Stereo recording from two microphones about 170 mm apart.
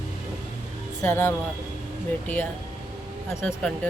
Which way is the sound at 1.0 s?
15° left (ahead or behind).